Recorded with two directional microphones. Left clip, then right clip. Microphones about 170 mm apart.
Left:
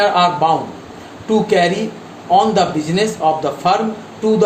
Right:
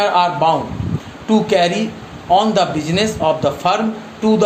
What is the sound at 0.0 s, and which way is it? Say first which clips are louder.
A man's voice: left 1 dB; 30° right (ahead or behind).